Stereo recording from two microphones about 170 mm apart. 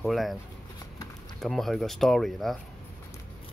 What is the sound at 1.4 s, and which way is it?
Speech, centre (ahead or behind).